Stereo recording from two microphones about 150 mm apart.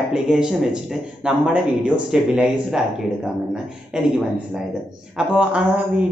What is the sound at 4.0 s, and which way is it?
Speech, 5° right (ahead or behind).